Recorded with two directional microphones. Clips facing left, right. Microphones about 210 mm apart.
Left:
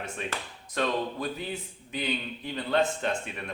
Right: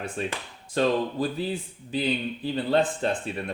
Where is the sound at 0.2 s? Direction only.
35° right (ahead or behind).